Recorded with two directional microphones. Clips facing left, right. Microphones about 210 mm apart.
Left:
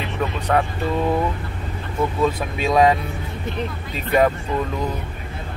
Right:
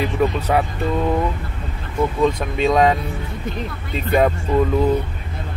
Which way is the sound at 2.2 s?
5° left (ahead or behind).